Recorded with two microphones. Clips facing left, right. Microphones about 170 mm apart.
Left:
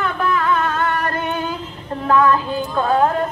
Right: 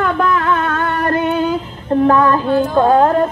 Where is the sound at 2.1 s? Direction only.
45° right (ahead or behind).